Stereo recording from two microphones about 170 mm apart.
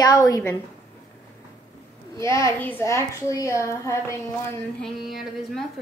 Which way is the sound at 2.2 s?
15° left (ahead or behind).